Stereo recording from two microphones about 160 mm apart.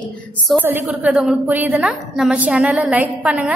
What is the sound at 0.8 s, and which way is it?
A woman's voice, 5° right (ahead or behind).